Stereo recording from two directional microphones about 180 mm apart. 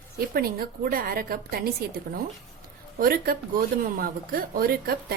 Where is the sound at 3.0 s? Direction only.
55° right (ahead or behind).